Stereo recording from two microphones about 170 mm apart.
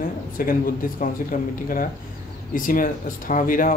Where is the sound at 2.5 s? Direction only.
55° left (ahead or behind).